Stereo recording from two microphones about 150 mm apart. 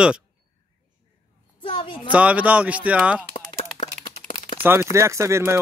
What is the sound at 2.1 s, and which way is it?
Speech, 10° right (ahead or behind).